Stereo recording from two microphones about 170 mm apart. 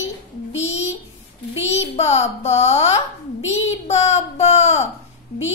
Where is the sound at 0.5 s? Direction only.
40° left (ahead or behind).